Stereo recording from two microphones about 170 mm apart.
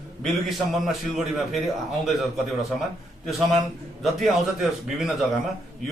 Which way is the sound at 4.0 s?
Centre (ahead or behind).